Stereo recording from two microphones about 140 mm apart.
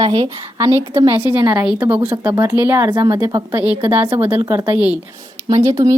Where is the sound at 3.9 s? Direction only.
15° right (ahead or behind).